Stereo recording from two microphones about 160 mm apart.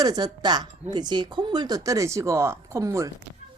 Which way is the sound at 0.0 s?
25° right (ahead or behind).